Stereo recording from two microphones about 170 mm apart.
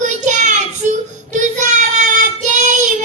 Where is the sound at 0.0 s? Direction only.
45° right (ahead or behind).